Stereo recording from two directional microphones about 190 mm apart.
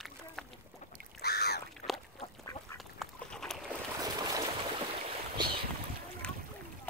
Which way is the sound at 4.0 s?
20° right (ahead or behind).